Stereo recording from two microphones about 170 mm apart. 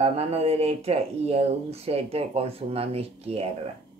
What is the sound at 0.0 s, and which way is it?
Speech, 40° right (ahead or behind).